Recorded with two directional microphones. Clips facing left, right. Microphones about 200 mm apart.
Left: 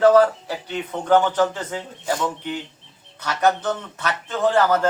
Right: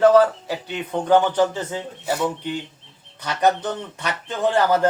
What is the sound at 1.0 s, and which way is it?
Speech, 15° right (ahead or behind).